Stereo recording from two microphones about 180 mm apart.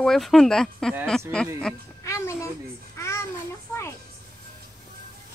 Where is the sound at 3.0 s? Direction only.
15° left (ahead or behind).